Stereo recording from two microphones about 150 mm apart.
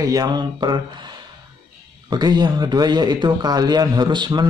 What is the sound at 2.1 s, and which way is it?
Speech, 25° right (ahead or behind).